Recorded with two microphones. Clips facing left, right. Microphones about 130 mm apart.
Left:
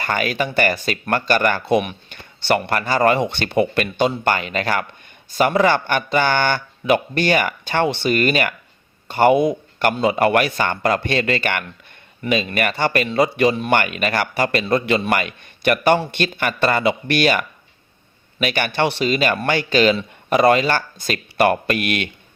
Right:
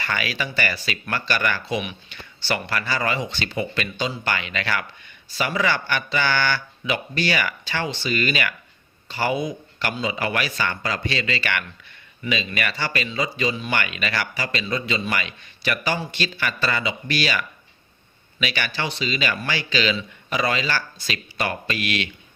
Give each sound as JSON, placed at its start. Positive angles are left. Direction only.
{"t": 0.0, "sound": "speech", "side_deg": 45}